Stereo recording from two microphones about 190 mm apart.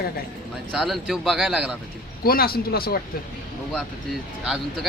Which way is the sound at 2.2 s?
50° left (ahead or behind).